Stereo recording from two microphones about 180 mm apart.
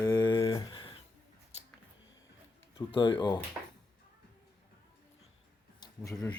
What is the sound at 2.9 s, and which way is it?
Speech, 25° left (ahead or behind).